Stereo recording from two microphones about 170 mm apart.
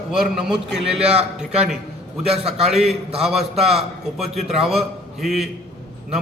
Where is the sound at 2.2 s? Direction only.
5° right (ahead or behind).